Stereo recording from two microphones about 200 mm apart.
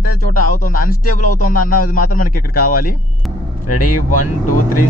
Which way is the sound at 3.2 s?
Centre (ahead or behind).